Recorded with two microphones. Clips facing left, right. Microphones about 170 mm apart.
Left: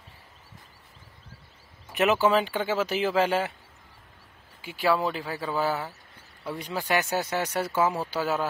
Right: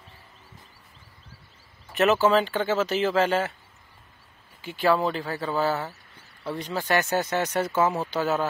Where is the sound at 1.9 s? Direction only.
15° left (ahead or behind).